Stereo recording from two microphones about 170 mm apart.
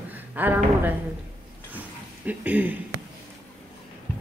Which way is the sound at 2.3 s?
10° right (ahead or behind).